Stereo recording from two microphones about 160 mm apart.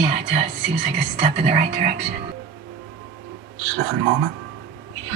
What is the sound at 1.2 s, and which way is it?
Speech, 40° right (ahead or behind).